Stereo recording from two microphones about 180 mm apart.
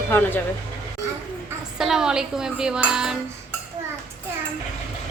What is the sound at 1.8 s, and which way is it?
Dishes, 5° right (ahead or behind).